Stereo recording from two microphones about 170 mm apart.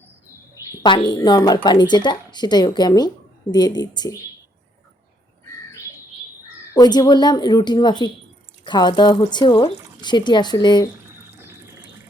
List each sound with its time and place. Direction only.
0.7 s speech: 25° left (ahead or behind)
6.7 s speech: 25° left (ahead or behind)
11.3 s ratchet: 15° right (ahead or behind)